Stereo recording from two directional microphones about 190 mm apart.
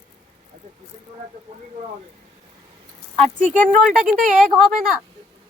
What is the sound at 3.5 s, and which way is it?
Speech, 40° right (ahead or behind).